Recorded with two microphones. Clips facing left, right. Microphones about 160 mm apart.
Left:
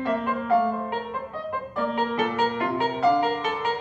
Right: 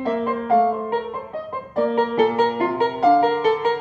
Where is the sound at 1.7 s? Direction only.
35° right (ahead or behind).